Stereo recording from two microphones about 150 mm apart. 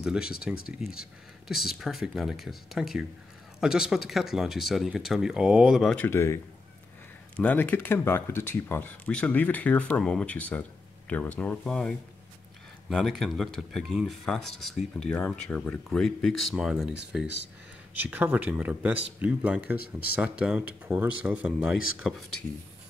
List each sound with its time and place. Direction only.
0.0 s speech: 5° right (ahead or behind)
5.9 s speech: 15° left (ahead or behind)
12.9 s speech: centre (ahead or behind)